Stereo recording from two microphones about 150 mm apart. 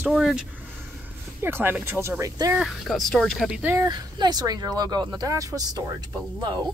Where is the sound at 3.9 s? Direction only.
30° right (ahead or behind).